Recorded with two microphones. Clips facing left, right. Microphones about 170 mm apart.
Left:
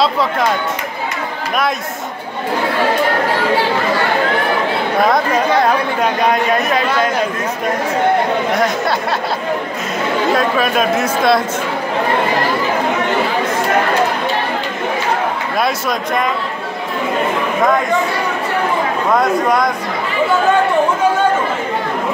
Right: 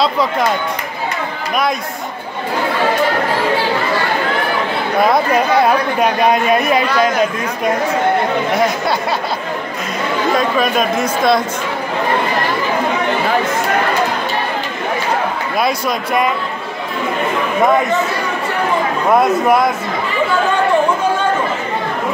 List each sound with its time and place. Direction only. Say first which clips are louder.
5.0 s speech: right 2 dB; 5° right (ahead or behind)
10.3 s speech: right 1 dB; 5° left (ahead or behind)
19.0 s speech: right 3 dB; 25° right (ahead or behind)